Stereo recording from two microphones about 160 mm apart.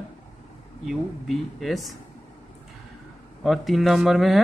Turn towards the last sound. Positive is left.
turn(degrees=0)  # may be behind; listen again after turning